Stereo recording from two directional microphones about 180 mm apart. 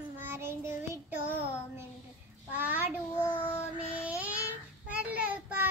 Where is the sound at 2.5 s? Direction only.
10° right (ahead or behind).